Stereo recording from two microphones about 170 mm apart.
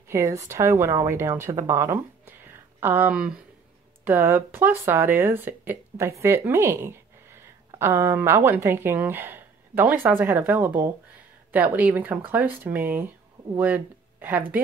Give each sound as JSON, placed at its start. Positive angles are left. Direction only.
{"t": 0.1, "sound": "speech", "side_deg": -20}